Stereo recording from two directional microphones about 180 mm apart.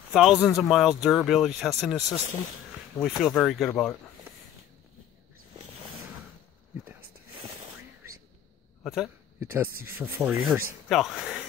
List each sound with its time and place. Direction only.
0.1 s speech: centre (ahead or behind)
8.8 s speech: centre (ahead or behind)
9.4 s speech: 10° right (ahead or behind)
10.9 s speech: centre (ahead or behind)